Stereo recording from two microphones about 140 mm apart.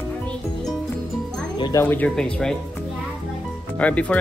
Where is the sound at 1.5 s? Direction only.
30° left (ahead or behind).